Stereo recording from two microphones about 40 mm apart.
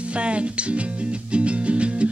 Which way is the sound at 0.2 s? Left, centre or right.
Right.